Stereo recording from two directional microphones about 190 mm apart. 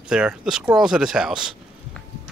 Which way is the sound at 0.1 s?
5° right (ahead or behind).